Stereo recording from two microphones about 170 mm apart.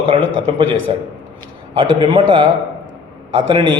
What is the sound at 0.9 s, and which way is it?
A man's voice, 30° right (ahead or behind).